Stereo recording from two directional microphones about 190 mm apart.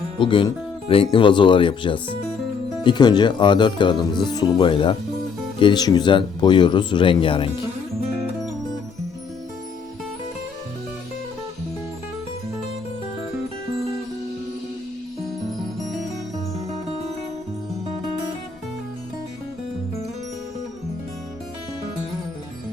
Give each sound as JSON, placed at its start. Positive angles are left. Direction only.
{"t": 0.2, "sound": "speech", "side_deg": 25}